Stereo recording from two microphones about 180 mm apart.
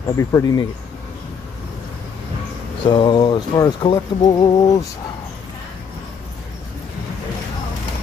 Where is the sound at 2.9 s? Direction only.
25° left (ahead or behind).